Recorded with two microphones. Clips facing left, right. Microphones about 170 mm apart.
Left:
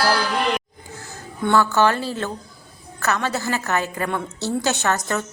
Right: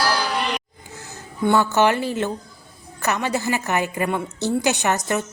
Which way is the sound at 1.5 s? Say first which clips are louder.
Even; 15° right (ahead or behind).